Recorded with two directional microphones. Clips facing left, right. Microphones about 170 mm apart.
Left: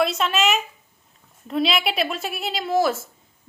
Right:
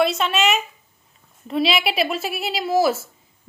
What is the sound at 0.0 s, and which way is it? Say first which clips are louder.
Speech: right 2 dB; centre (ahead or behind).